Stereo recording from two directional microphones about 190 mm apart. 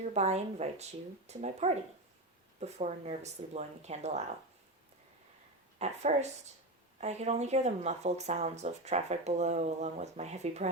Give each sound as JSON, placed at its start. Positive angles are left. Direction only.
{"t": 0.0, "sound": "speech", "side_deg": -35}
{"t": 5.8, "sound": "speech", "side_deg": -35}